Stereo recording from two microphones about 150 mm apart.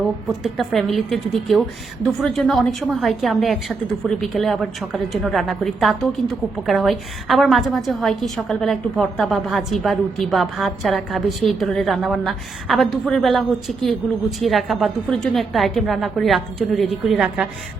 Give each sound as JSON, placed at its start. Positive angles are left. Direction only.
{"t": 0.3, "sound": "a woman's voice", "side_deg": 0}